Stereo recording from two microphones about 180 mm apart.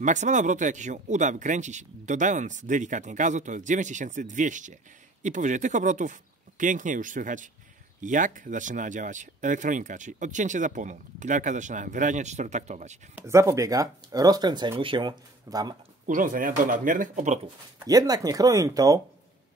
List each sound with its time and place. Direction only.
0.0 s speech: 40° right (ahead or behind)
13.1 s speech: 15° right (ahead or behind)
16.1 s speech: 50° right (ahead or behind)
17.8 s speech: 20° right (ahead or behind)